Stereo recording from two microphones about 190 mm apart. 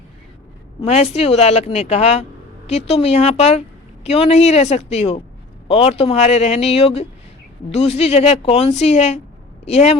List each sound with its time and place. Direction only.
0.8 s a woman's voice: 35° left (ahead or behind)